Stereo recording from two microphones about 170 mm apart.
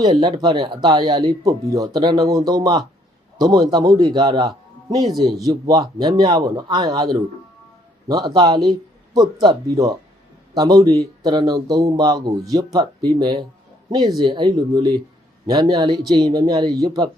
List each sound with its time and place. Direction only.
0.0 s a man's voice: 25° right (ahead or behind)